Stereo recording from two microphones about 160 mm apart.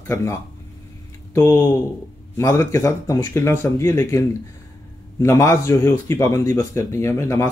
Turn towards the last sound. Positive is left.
turn(degrees=15)  # may be behind; listen again after turning